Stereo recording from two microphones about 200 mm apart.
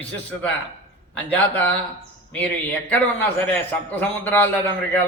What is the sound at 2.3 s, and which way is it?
A man's voice, 5° left (ahead or behind).